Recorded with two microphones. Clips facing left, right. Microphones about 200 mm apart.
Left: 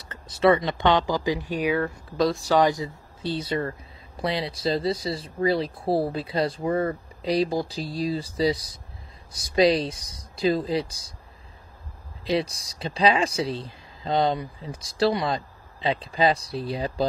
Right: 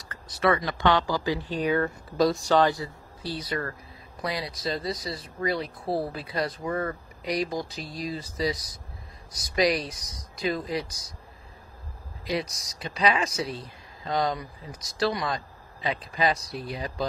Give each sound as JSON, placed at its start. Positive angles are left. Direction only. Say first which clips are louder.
{"t": 0.1, "sound": "speech", "louder": "left 5 dB", "side_deg": 25}
{"t": 2.5, "sound": "speech", "louder": "left 1 dB", "side_deg": 15}
{"t": 12.3, "sound": "speech", "louder": "left 5 dB", "side_deg": 30}